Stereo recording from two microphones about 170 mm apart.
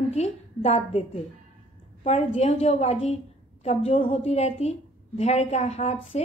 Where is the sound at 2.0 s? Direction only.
40° left (ahead or behind).